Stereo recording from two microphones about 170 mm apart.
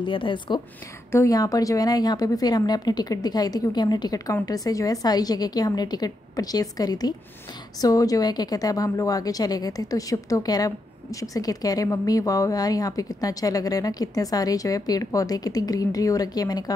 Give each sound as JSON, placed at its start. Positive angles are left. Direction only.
{"t": 0.0, "sound": "a woman's voice", "side_deg": 30}
{"t": 1.1, "sound": "a woman's voice", "side_deg": 20}